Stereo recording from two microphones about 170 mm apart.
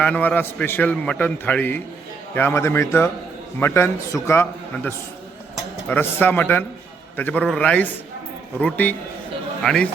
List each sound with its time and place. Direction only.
0.0 s a man's voice: 10° left (ahead or behind)